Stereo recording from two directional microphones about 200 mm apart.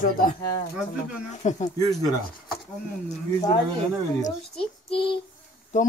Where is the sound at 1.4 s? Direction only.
35° left (ahead or behind).